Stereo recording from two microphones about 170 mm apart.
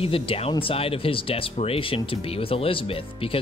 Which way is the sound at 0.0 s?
30° left (ahead or behind).